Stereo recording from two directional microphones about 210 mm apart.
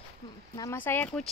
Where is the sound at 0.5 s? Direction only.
10° left (ahead or behind).